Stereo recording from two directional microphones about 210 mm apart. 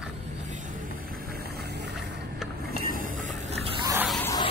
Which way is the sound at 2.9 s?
40° right (ahead or behind).